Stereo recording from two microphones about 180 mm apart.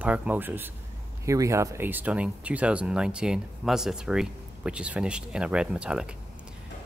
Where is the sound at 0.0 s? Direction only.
10° right (ahead or behind).